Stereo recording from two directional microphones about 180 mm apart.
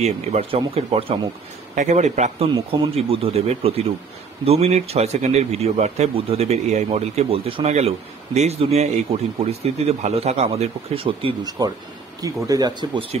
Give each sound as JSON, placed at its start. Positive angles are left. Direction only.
{"t": 0.0, "sound": "speech", "side_deg": -35}
{"t": 2.5, "sound": "speech", "side_deg": -25}